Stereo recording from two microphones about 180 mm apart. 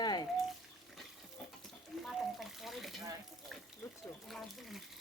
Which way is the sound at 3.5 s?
Centre (ahead or behind).